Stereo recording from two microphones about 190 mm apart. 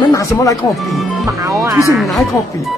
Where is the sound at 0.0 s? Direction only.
15° left (ahead or behind).